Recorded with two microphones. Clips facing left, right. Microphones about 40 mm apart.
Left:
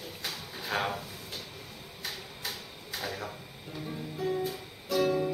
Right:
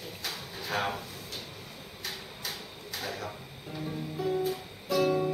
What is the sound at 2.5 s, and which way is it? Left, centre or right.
Tick-tock, centre.